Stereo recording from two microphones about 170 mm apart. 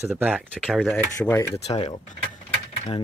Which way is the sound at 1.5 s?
35° left (ahead or behind).